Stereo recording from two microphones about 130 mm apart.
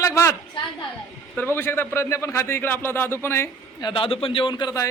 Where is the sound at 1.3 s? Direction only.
15° left (ahead or behind).